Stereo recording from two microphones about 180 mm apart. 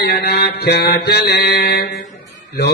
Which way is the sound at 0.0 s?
65° left (ahead or behind).